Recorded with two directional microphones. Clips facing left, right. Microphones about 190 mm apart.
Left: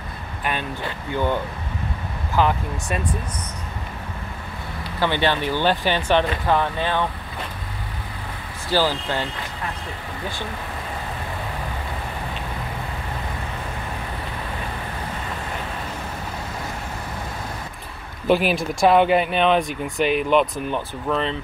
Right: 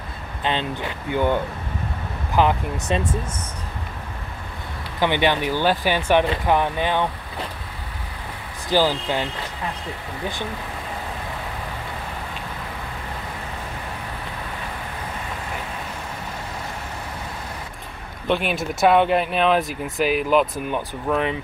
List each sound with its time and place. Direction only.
0.4 s speech: 25° right (ahead or behind)
5.0 s speech: 15° right (ahead or behind)
8.6 s speech: 15° right (ahead or behind)
18.2 s speech: 5° left (ahead or behind)